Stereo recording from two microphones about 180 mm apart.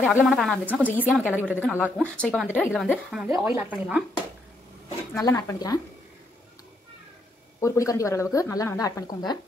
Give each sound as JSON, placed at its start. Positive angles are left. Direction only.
{"t": 0.1, "sound": "a woman's voice", "side_deg": -5}
{"t": 5.1, "sound": "speech", "side_deg": 15}
{"t": 7.6, "sound": "a woman's voice", "side_deg": 15}